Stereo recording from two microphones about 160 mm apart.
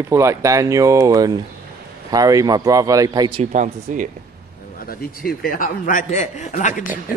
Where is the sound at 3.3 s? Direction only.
45° right (ahead or behind).